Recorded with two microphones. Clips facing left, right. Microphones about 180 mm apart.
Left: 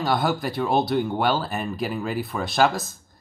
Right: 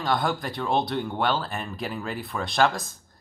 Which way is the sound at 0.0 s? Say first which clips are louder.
Left 3 dB; 5° left (ahead or behind).